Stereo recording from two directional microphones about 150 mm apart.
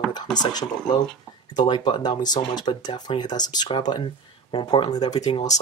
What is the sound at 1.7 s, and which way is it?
Speech, 30° left (ahead or behind).